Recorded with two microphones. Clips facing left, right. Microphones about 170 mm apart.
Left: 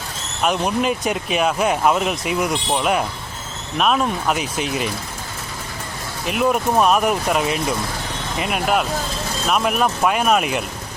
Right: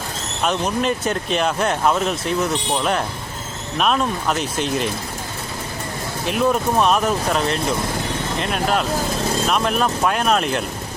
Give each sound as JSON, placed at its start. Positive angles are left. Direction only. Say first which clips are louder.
{"t": 0.4, "sound": "speech", "louder": "left 1 dB", "side_deg": 10}
{"t": 6.2, "sound": "speech", "louder": "even", "side_deg": 5}